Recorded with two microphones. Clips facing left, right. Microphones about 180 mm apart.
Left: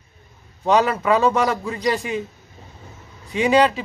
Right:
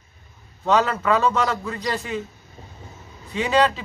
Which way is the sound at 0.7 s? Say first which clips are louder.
Left 2 dB; 10° left (ahead or behind).